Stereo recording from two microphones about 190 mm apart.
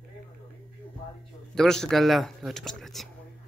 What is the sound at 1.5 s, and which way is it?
Speech, 5° left (ahead or behind).